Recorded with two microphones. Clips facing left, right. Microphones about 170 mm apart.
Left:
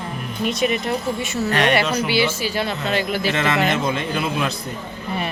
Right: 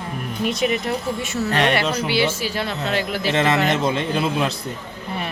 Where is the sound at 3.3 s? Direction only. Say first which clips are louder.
Right 3 dB; 30° right (ahead or behind).